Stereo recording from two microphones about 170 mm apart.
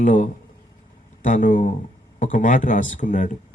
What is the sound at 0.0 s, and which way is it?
A man's voice, 50° left (ahead or behind).